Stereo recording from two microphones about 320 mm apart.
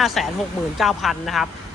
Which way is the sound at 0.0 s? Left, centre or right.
Centre.